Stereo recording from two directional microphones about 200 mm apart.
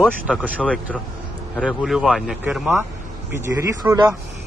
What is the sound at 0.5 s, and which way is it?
Speech, 5° left (ahead or behind).